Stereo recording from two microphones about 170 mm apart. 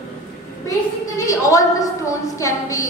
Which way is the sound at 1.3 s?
20° left (ahead or behind).